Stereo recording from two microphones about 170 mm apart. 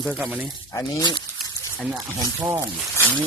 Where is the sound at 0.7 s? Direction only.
20° left (ahead or behind).